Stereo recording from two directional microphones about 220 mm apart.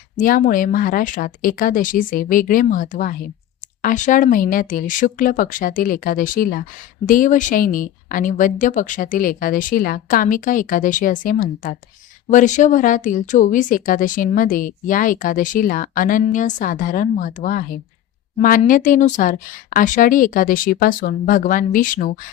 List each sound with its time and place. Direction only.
0.2 s speech: 40° left (ahead or behind)